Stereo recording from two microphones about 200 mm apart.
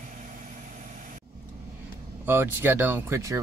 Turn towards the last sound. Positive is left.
turn(degrees=-15)  # may be behind; listen again after turning